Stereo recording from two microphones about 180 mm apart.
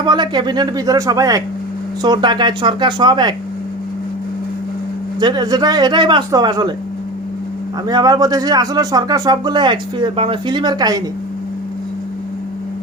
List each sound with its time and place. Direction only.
0.0 s speech: 25° right (ahead or behind)
5.2 s speech: 25° right (ahead or behind)
7.9 s speech: 20° right (ahead or behind)